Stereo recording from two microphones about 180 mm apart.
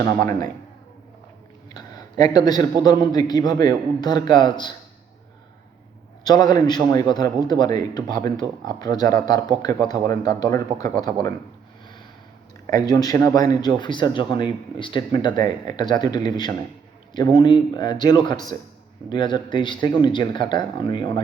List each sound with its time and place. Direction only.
0.3 s a man's voice: 20° left (ahead or behind)
1.7 s a sound: 20° left (ahead or behind)
2.8 s a man's voice: 20° left (ahead or behind)
6.2 s a man's voice: 20° left (ahead or behind)
12.6 s a man's voice: 20° left (ahead or behind)